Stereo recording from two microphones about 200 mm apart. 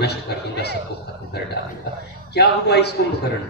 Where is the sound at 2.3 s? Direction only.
55° left (ahead or behind).